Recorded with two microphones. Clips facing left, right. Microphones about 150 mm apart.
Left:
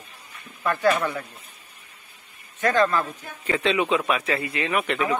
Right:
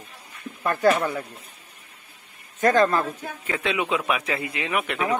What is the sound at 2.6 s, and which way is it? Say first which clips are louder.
Speech: right 2 dB; 40° right (ahead or behind).